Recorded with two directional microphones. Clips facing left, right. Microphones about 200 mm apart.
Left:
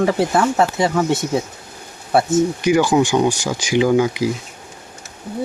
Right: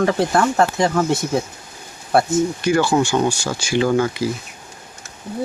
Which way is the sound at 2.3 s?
20° left (ahead or behind).